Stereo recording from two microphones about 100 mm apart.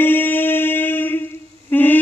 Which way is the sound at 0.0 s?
20° left (ahead or behind).